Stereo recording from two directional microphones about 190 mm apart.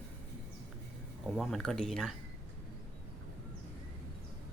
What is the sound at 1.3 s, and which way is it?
Speech, centre (ahead or behind).